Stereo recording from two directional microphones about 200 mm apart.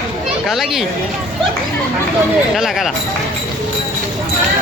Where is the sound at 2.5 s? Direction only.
Centre (ahead or behind).